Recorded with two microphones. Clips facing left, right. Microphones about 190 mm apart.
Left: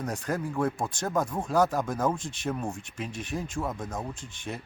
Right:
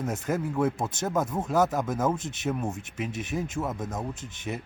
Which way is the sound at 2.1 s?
20° right (ahead or behind).